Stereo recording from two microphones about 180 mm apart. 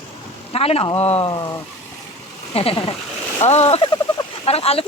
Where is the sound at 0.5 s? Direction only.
35° left (ahead or behind).